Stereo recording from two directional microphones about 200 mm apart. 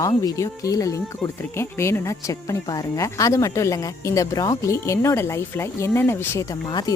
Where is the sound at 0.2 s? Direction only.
15° left (ahead or behind).